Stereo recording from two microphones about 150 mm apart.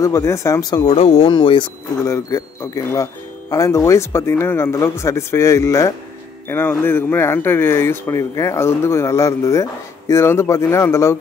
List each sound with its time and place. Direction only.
0.0 s speech: 20° left (ahead or behind)
0.9 s speech: 40° left (ahead or behind)
2.0 s speech: 20° left (ahead or behind)